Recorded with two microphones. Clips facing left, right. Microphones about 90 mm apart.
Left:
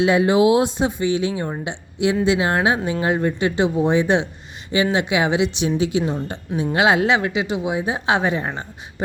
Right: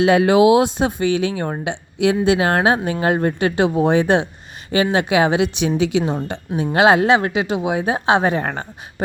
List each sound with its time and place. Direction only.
0.0 s a woman's voice: 70° right (ahead or behind); by 5.6 s 50° right (ahead or behind)
5.6 s speech: 80° right
6.7 s a woman's voice: 40° right (ahead or behind)
8.0 s a woman's voice: 40° right (ahead or behind); by 8.6 s 60° right (ahead or behind)